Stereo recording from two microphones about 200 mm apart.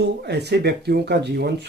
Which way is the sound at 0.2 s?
55° right (ahead or behind).